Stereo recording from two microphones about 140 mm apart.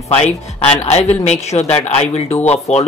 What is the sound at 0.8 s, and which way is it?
Speech, 50° left (ahead or behind).